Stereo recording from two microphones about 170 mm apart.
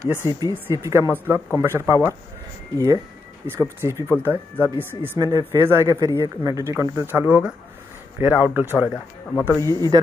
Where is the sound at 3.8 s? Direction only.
15° right (ahead or behind).